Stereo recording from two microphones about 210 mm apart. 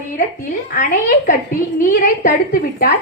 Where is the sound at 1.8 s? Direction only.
40° left (ahead or behind).